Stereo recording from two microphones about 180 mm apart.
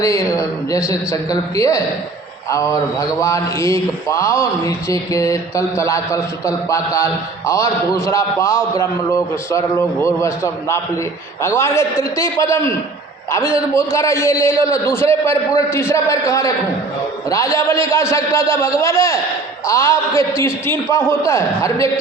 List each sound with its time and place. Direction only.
0.0 s speech: 15° left (ahead or behind)